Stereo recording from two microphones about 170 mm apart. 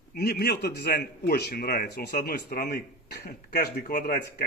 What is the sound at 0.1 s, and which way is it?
Speech, 70° left (ahead or behind).